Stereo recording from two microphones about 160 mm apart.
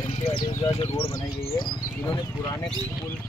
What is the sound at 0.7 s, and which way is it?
Speech, 40° left (ahead or behind).